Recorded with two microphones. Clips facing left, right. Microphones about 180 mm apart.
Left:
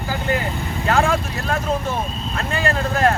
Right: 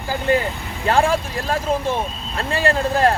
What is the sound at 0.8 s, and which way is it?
Speech, 30° right (ahead or behind).